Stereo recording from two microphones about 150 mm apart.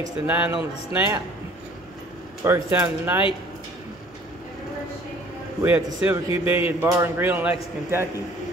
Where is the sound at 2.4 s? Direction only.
15° right (ahead or behind).